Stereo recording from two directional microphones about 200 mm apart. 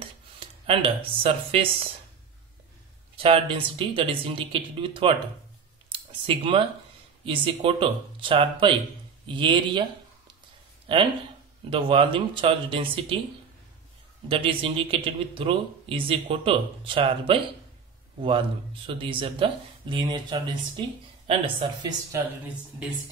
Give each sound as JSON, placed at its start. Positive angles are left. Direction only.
{"t": 0.7, "sound": "speech", "side_deg": -30}
{"t": 3.2, "sound": "speech", "side_deg": -25}
{"t": 5.9, "sound": "a sound", "side_deg": -25}
{"t": 7.2, "sound": "speech", "side_deg": -25}
{"t": 10.9, "sound": "speech", "side_deg": -25}
{"t": 14.3, "sound": "speech", "side_deg": -25}
{"t": 18.9, "sound": "speech", "side_deg": -25}